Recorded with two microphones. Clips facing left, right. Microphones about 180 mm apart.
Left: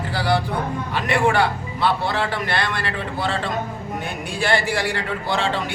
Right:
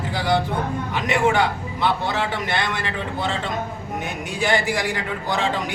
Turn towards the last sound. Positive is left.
turn(degrees=-15)  # may be behind; listen again after turning